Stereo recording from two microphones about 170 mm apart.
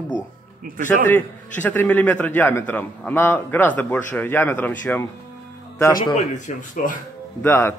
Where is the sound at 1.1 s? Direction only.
10° left (ahead or behind).